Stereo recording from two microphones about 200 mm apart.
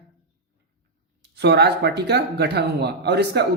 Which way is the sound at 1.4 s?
55° right (ahead or behind).